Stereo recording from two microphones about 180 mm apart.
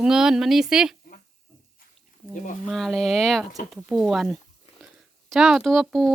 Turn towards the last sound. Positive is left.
turn(degrees=0)  # may be behind; listen again after turning